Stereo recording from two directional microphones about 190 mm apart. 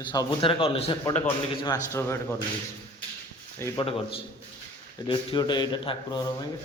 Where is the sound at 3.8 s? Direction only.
30° left (ahead or behind).